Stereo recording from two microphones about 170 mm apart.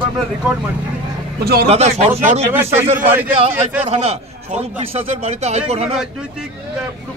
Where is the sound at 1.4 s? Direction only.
65° right (ahead or behind).